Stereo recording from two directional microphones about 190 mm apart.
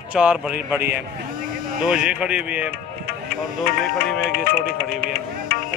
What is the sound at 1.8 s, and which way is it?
Speech, 5° right (ahead or behind).